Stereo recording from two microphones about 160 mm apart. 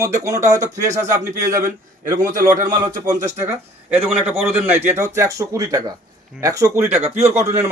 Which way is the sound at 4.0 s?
15° right (ahead or behind).